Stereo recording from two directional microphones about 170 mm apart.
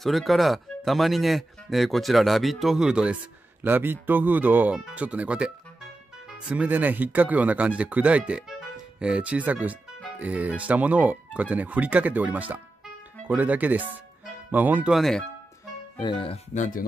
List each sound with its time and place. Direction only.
0.0 s speech: centre (ahead or behind)
16.0 s speech: 30° left (ahead or behind)
16.5 s speech: 50° left (ahead or behind)